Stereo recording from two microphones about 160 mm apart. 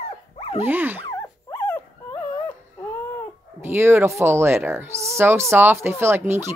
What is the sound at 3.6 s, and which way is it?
Speech, 15° right (ahead or behind).